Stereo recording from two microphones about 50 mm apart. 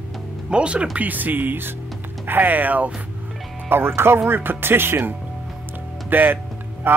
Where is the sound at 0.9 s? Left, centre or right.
Right.